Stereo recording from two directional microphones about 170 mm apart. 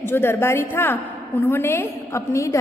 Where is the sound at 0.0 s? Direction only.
15° left (ahead or behind).